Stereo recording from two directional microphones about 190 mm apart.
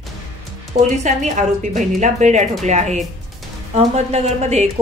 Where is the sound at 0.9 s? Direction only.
40° right (ahead or behind).